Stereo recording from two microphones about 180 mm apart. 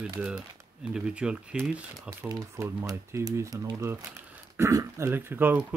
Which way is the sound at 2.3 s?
20° right (ahead or behind).